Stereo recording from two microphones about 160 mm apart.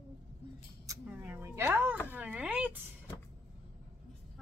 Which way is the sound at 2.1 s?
10° right (ahead or behind).